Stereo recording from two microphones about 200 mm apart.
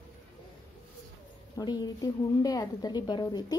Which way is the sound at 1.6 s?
20° left (ahead or behind).